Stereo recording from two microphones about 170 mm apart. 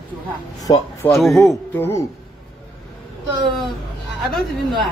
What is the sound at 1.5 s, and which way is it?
Speech, 15° left (ahead or behind).